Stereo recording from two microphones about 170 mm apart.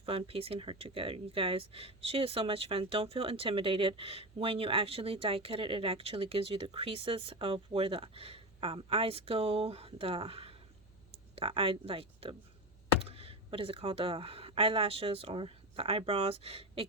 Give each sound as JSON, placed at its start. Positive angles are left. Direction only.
{"t": 0.0, "sound": "speech", "side_deg": -35}